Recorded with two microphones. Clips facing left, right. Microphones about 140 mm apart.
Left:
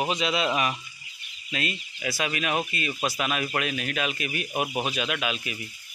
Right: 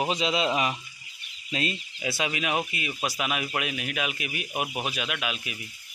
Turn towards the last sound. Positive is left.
turn(degrees=-5)  # may be behind; listen again after turning